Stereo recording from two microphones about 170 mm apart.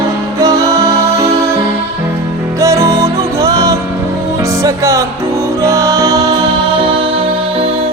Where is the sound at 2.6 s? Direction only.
15° right (ahead or behind); by 7.9 s 35° right (ahead or behind).